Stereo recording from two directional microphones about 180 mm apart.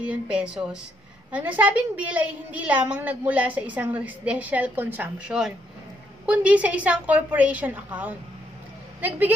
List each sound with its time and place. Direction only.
0.0 s a woman's voice: 5° right (ahead or behind)